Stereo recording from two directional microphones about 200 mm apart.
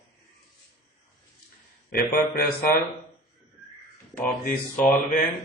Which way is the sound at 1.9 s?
45° left (ahead or behind).